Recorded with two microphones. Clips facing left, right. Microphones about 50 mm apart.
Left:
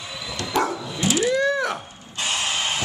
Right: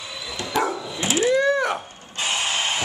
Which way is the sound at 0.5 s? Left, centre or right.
Centre.